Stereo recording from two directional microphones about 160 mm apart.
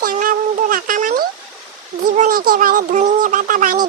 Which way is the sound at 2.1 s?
55° right (ahead or behind).